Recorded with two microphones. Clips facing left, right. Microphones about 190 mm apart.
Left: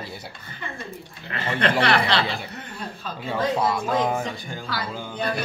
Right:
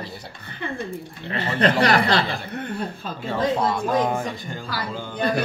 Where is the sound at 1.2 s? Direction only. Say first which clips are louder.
Right 3 dB; 35° right (ahead or behind).